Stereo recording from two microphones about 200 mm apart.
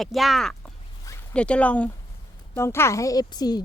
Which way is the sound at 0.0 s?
Centre (ahead or behind).